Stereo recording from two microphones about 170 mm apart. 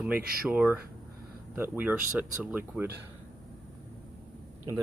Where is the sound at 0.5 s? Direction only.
10° right (ahead or behind).